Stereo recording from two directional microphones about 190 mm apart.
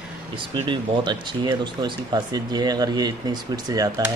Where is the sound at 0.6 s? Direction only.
25° right (ahead or behind).